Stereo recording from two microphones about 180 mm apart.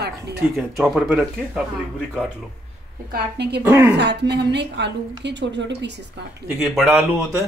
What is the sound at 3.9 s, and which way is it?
A woman's voice, 70° right (ahead or behind).